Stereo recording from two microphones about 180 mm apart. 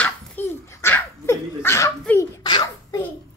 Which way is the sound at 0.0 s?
10° left (ahead or behind).